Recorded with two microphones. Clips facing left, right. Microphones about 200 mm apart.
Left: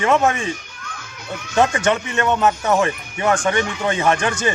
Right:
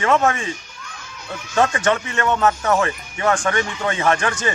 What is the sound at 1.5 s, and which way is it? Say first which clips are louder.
Speech: left 1 dB; 15° left (ahead or behind).